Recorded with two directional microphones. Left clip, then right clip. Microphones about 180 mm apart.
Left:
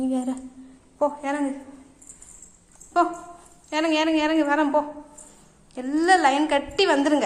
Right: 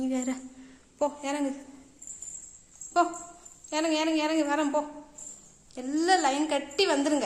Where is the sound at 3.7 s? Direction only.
Centre (ahead or behind).